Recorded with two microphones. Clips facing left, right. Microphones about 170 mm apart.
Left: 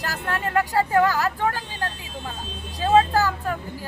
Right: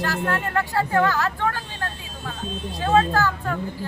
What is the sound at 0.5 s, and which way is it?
Speech, 15° left (ahead or behind).